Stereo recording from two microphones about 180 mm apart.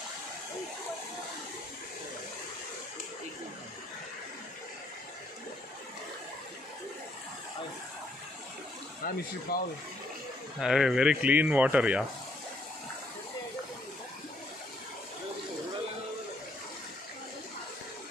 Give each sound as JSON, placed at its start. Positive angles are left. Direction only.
{"t": 9.0, "sound": "speech", "side_deg": 55}
{"t": 10.6, "sound": "speech", "side_deg": 0}